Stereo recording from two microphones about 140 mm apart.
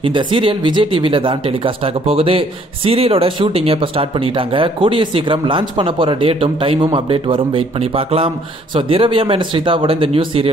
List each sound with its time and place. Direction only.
0.0 s speech: 40° right (ahead or behind)
8.7 s speech: 40° right (ahead or behind)